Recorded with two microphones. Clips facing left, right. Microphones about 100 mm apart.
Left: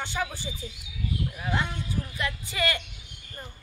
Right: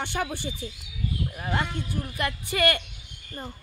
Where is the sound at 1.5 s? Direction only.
60° right (ahead or behind).